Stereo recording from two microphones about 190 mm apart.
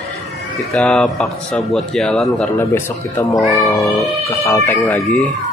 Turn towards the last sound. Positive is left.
turn(degrees=10)  # may be behind; listen again after turning